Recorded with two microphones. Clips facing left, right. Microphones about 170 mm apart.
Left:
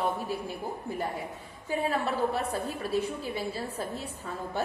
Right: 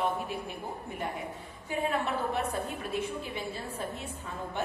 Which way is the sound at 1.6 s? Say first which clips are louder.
Left 2 dB; 35° left (ahead or behind).